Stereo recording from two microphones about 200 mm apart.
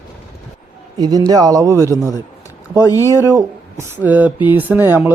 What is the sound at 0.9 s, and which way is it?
A man's voice, 20° right (ahead or behind).